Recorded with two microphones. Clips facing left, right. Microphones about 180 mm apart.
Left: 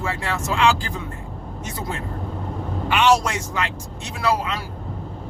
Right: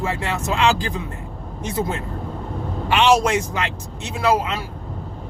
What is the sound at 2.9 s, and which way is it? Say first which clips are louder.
Speech: right 2 dB; 25° right (ahead or behind).